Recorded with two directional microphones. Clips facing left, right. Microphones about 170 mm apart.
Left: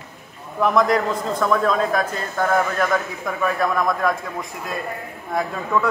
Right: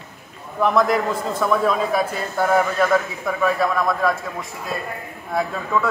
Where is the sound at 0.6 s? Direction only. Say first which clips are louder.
Even; 5° right (ahead or behind).